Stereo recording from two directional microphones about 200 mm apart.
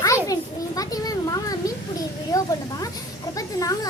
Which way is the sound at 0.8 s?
20° left (ahead or behind).